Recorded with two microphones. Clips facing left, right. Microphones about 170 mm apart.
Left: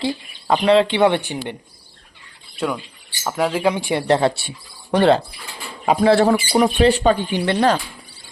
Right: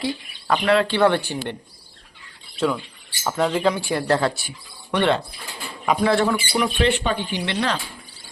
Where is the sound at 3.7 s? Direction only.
20° left (ahead or behind); by 7.7 s 45° left (ahead or behind).